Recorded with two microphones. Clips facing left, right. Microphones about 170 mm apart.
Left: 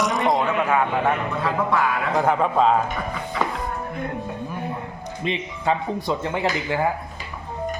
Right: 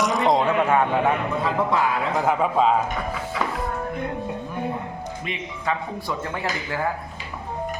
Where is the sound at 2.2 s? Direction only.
5° right (ahead or behind).